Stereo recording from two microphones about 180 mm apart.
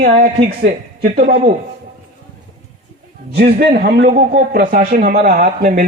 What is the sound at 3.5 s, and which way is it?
Speech, 60° right (ahead or behind).